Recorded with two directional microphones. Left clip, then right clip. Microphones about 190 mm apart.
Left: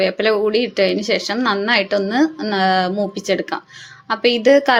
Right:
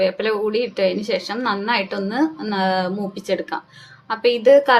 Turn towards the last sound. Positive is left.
turn(degrees=20)  # may be behind; listen again after turning